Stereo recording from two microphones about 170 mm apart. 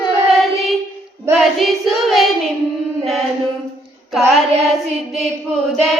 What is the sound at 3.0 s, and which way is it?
Chant, centre (ahead or behind).